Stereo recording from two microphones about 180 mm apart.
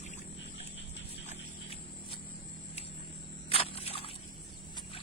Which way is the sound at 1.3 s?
35° left (ahead or behind).